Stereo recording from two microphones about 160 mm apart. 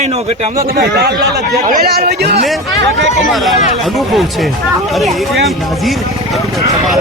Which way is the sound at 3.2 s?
Centre (ahead or behind).